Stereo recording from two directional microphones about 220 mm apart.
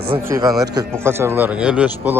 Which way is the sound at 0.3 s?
15° right (ahead or behind).